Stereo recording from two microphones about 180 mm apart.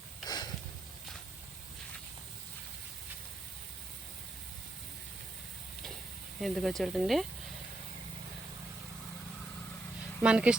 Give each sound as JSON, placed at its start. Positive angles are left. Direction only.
{"t": 0.3, "sound": "sniff", "side_deg": 25}
{"t": 6.4, "sound": "speech", "side_deg": 0}
{"t": 10.2, "sound": "speech", "side_deg": -5}